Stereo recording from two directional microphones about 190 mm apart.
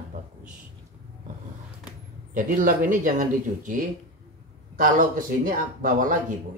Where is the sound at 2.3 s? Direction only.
45° right (ahead or behind).